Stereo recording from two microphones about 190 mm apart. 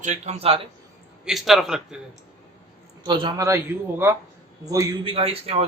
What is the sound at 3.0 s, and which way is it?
A man's voice, 25° right (ahead or behind).